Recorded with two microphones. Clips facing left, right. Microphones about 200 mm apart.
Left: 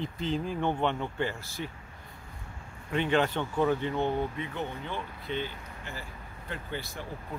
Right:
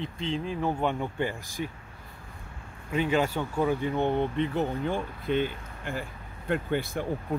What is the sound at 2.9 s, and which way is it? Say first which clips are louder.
Speech: right 1 dB; 5° right (ahead or behind).